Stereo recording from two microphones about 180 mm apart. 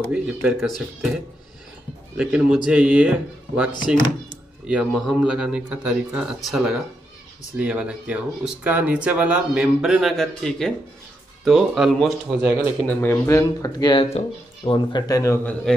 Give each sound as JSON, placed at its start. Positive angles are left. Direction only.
{"t": 0.1, "sound": "speech", "side_deg": -5}
{"t": 2.1, "sound": "speech", "side_deg": -5}
{"t": 3.9, "sound": "speech", "side_deg": 25}
{"t": 4.6, "sound": "speech", "side_deg": 0}
{"t": 12.4, "sound": "speech", "side_deg": -15}
{"t": 12.8, "sound": "speech", "side_deg": 10}